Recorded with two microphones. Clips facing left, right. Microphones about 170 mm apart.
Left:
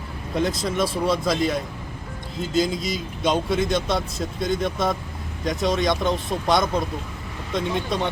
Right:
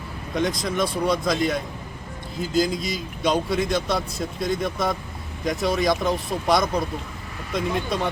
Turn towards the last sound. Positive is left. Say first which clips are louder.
# even
turn(degrees=0)  # may be behind; listen again after turning